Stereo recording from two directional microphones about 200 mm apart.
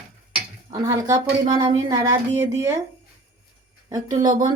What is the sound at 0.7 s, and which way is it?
A woman's voice, 15° right (ahead or behind).